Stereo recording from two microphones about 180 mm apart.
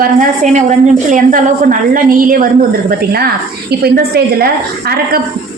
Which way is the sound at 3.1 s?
60° right (ahead or behind).